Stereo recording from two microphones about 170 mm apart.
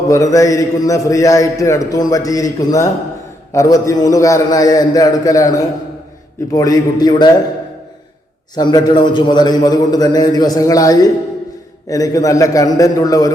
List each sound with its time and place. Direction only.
0.1 s a man's voice: 20° left (ahead or behind)
8.5 s a man's voice: 25° left (ahead or behind)